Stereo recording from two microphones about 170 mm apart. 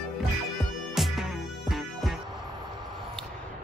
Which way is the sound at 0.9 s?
Centre (ahead or behind).